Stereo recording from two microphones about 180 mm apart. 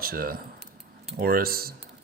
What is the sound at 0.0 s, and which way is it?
Speech, 55° right (ahead or behind).